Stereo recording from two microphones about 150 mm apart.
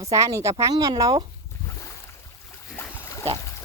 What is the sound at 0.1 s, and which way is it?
Speech, 20° right (ahead or behind).